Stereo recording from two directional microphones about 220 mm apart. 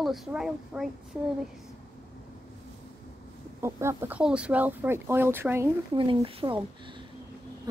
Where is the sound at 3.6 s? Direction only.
10° right (ahead or behind).